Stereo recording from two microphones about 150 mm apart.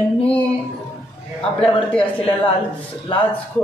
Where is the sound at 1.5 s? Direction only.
40° left (ahead or behind).